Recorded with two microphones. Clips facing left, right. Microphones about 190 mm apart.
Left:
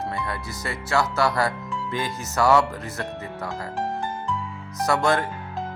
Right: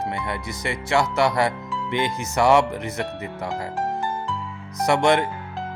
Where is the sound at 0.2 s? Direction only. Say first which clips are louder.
Right 2 dB; 20° right (ahead or behind).